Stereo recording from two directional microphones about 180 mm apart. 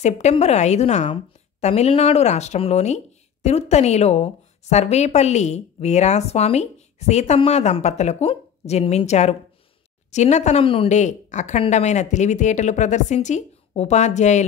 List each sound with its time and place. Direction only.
0.0 s a woman's voice: 40° left (ahead or behind)